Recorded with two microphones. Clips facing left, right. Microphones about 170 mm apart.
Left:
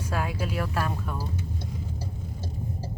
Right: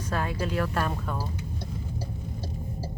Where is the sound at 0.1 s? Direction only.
10° left (ahead or behind).